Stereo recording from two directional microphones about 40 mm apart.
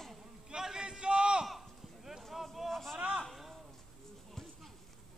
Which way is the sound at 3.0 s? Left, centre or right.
Right.